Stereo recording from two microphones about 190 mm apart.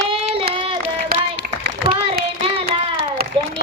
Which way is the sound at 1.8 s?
30° right (ahead or behind).